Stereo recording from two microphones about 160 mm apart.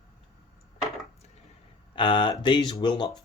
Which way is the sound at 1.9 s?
30° left (ahead or behind).